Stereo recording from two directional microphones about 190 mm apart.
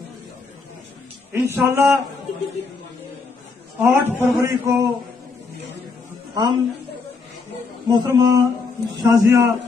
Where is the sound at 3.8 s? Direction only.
10° right (ahead or behind).